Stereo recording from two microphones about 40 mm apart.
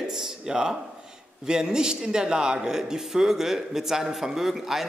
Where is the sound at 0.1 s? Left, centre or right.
Centre.